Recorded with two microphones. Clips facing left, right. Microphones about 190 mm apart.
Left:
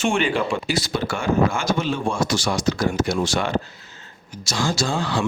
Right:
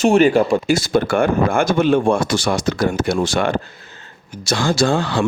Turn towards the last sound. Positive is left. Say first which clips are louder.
# right 6 dB
turn(degrees=-60)  # may be behind; listen again after turning